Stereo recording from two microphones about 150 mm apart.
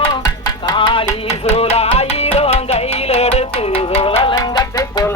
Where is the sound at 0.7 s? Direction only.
30° left (ahead or behind).